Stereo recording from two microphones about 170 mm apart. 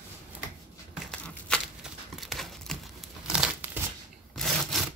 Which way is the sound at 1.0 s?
5° left (ahead or behind).